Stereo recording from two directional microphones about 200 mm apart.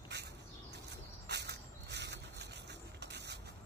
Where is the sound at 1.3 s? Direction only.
55° right (ahead or behind).